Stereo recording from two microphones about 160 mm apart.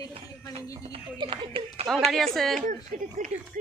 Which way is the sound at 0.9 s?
35° right (ahead or behind).